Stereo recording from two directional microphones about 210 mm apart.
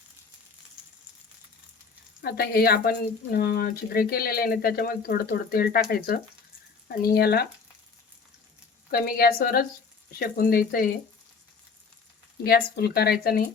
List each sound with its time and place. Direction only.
2.2 s speech: 50° left (ahead or behind)
8.9 s speech: 45° left (ahead or behind)
12.4 s speech: 50° left (ahead or behind)